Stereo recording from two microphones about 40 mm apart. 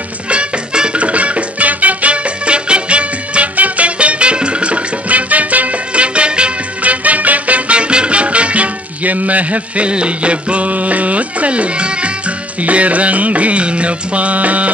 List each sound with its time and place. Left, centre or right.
0.3 s music: right
6.8 s music: right